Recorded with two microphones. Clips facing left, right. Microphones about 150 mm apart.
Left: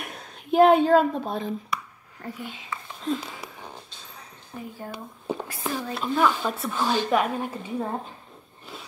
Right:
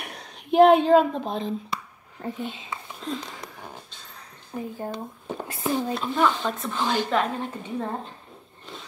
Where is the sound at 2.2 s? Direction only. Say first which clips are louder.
Right 4 dB; 25° right (ahead or behind).